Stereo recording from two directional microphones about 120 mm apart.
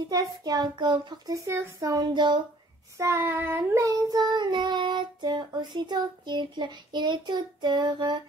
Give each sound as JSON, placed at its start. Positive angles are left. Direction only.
{"t": 0.1, "sound": "child singing", "side_deg": -35}
{"t": 1.3, "sound": "speech", "side_deg": -25}
{"t": 3.0, "sound": "child singing", "side_deg": -20}